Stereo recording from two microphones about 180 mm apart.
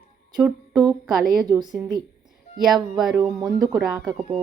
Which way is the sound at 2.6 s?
Centre (ahead or behind).